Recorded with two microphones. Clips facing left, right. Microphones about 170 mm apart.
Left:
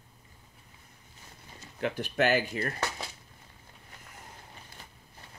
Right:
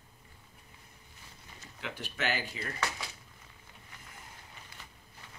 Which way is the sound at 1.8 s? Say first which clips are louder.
Left 10 dB; 50° left (ahead or behind).